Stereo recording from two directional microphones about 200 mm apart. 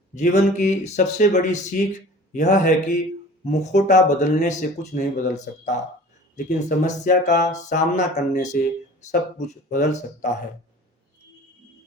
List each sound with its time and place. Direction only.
0.2 s speech: 35° left (ahead or behind)